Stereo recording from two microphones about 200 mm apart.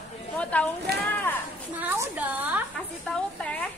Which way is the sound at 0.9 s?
55° right (ahead or behind).